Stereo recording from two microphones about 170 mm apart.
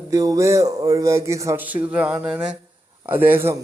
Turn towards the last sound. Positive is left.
turn(degrees=-15)  # may be behind; listen again after turning